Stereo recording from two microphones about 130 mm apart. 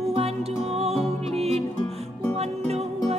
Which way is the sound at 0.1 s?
50° right (ahead or behind).